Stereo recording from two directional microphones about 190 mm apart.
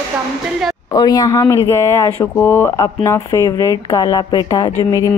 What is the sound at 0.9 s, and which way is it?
Speech, 20° left (ahead or behind).